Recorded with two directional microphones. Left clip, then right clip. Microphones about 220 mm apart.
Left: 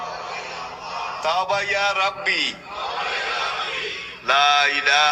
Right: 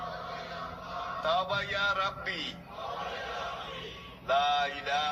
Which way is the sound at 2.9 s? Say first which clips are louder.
Left 12 dB; 45° left (ahead or behind).